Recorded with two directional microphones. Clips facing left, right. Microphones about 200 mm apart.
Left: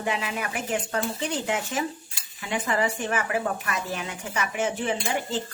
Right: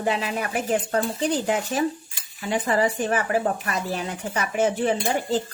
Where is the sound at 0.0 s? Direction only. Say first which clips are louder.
Right 4 dB; 35° right (ahead or behind).